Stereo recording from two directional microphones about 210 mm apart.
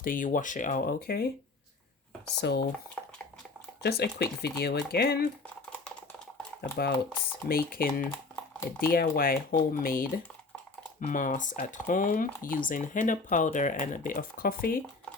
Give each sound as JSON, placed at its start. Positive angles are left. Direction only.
{"t": 0.0, "sound": "speech", "side_deg": 40}
{"t": 2.4, "sound": "speech", "side_deg": 50}
{"t": 3.0, "sound": "a sound", "side_deg": 10}
{"t": 3.8, "sound": "speech", "side_deg": 50}
{"t": 6.6, "sound": "speech", "side_deg": 50}
{"t": 8.1, "sound": "typing", "side_deg": 10}
{"t": 8.9, "sound": "speech", "side_deg": 45}